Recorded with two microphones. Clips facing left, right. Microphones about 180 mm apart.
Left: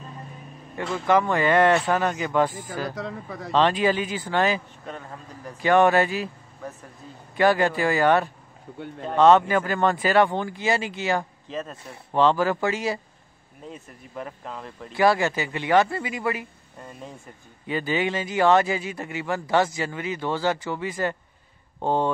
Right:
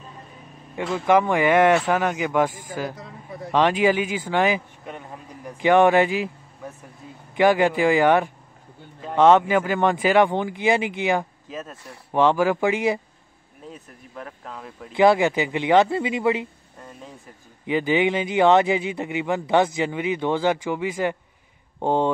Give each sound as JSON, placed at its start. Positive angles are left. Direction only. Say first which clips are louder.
{"t": 0.9, "sound": "a man's voice", "louder": "right 2 dB", "side_deg": -15}
{"t": 3.0, "sound": "speech", "louder": "left 4 dB", "side_deg": 90}
{"t": 3.5, "sound": "a man's voice", "louder": "right 2 dB", "side_deg": -15}
{"t": 11.5, "sound": "speech", "louder": "left 2 dB", "side_deg": -5}
{"t": 12.1, "sound": "a man's voice", "louder": "right 2 dB", "side_deg": -15}
{"t": 13.7, "sound": "speech", "louder": "left 1 dB", "side_deg": 5}
{"t": 14.9, "sound": "speech", "louder": "right 4 dB", "side_deg": -20}
{"t": 17.6, "sound": "a man's voice", "louder": "right 5 dB", "side_deg": -15}